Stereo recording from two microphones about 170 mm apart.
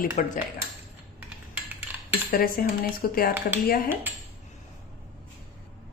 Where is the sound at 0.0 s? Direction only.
55° left (ahead or behind).